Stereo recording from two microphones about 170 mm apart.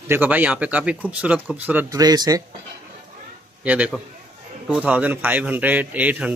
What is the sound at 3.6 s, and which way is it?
A man's voice, 10° right (ahead or behind).